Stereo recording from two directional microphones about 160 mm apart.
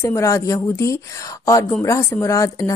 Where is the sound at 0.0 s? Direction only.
20° left (ahead or behind).